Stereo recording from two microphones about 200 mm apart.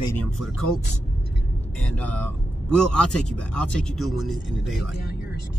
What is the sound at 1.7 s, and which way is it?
Speech, 5° left (ahead or behind).